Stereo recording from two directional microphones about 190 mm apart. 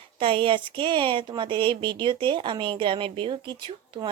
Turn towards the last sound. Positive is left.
turn(degrees=-25)  # may be behind; listen again after turning